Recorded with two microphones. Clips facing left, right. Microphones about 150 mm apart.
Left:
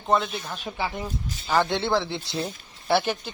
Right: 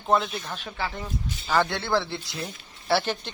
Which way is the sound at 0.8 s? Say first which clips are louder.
Left 2 dB; 15° left (ahead or behind).